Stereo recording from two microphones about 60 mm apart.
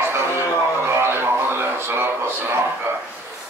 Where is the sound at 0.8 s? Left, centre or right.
Right.